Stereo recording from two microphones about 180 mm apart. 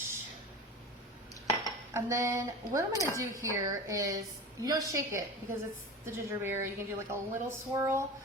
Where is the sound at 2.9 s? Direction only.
15° left (ahead or behind).